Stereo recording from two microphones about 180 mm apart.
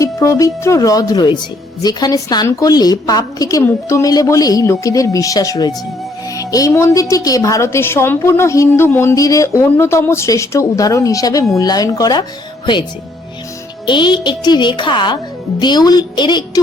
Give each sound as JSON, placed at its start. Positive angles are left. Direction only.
{"t": 0.0, "sound": "a woman's voice", "side_deg": 15}
{"t": 13.8, "sound": "a woman's voice", "side_deg": 25}